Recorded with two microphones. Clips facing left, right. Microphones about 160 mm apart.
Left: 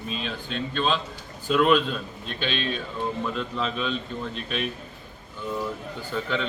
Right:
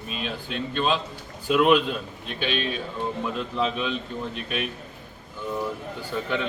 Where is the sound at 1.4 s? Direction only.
10° right (ahead or behind).